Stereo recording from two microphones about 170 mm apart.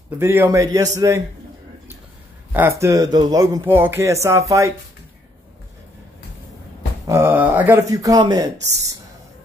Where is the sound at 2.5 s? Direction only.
15° right (ahead or behind).